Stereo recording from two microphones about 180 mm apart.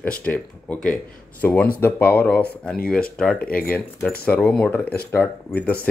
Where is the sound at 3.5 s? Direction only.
55° left (ahead or behind).